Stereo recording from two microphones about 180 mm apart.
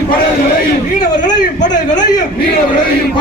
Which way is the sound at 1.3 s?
45° left (ahead or behind).